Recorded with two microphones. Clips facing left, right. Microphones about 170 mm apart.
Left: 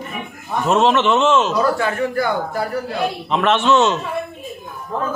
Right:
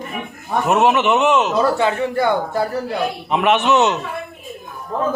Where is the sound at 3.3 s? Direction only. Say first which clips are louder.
Even; 15° right (ahead or behind).